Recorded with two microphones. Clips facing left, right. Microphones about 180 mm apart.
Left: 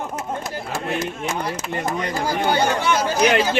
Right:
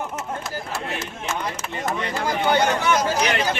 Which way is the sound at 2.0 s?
40° left (ahead or behind).